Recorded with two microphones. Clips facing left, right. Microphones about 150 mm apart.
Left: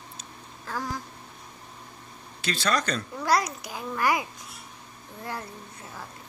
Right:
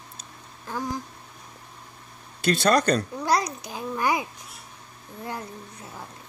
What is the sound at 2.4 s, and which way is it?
Speech, 55° right (ahead or behind).